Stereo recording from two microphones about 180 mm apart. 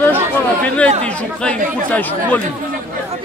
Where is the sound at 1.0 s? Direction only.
5° left (ahead or behind).